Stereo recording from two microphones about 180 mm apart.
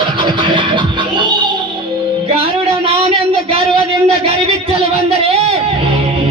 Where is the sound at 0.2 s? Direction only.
25° right (ahead or behind).